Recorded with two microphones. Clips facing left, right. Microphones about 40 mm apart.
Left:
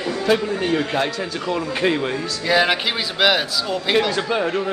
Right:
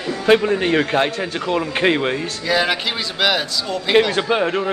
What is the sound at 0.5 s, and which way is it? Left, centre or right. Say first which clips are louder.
Speech: right 3 dB; right.